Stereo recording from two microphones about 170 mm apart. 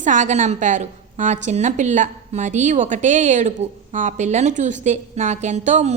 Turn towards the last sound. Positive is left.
turn(degrees=-45)  # may be behind; listen again after turning